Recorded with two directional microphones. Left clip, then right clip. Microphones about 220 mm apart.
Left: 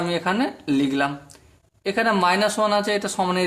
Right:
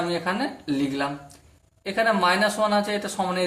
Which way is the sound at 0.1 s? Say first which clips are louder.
Left 3 dB; 40° left (ahead or behind).